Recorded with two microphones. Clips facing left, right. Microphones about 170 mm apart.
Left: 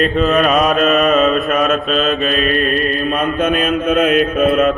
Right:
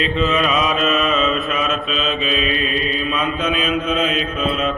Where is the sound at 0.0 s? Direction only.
50° left (ahead or behind).